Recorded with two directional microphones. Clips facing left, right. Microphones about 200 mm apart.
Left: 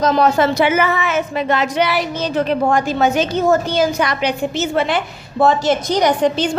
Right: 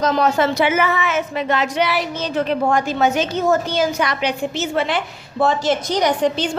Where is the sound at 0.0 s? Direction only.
40° left (ahead or behind).